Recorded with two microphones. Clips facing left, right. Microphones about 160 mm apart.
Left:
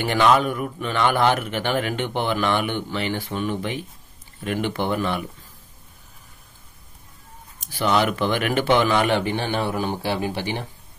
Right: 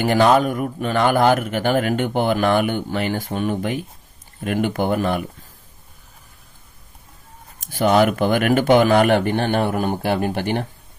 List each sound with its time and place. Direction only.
0.0 s a man's voice: 40° right (ahead or behind)
7.6 s a man's voice: 45° right (ahead or behind)